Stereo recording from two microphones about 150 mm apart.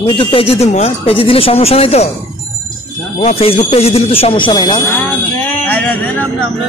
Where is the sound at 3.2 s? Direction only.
45° left (ahead or behind); by 4.8 s 30° left (ahead or behind).